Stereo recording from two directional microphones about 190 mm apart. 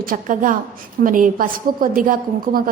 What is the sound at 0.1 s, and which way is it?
A woman's voice, 45° right (ahead or behind).